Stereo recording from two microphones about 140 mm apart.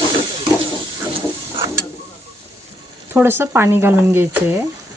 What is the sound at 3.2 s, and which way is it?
Speech, 15° right (ahead or behind).